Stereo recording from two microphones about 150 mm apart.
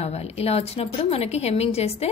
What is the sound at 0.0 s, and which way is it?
A woman's voice, 45° left (ahead or behind).